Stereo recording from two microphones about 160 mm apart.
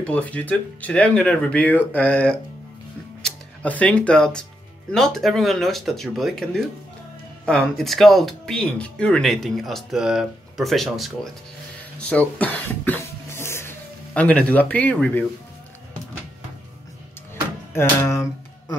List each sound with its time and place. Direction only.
0.0 s speech: 10° left (ahead or behind)
12.0 s speech: 10° left (ahead or behind)
17.7 s speech: 15° left (ahead or behind)